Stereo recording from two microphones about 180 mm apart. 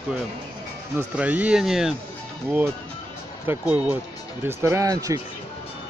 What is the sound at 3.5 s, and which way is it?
Speech, 10° right (ahead or behind).